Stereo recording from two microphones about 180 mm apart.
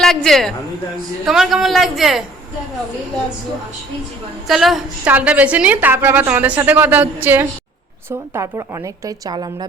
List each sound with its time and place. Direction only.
0.0 s a man's voice: centre (ahead or behind)
4.4 s a woman's voice: centre (ahead or behind); by 9.6 s 25° right (ahead or behind)